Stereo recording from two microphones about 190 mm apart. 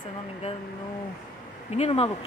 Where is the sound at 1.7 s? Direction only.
35° left (ahead or behind).